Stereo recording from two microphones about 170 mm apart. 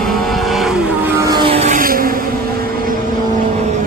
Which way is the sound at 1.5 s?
40° right (ahead or behind).